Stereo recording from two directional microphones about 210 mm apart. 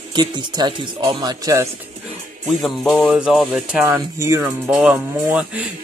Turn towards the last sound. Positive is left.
turn(degrees=-5)  # may be behind; listen again after turning